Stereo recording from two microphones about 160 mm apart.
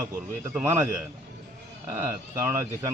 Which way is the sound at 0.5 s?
15° right (ahead or behind).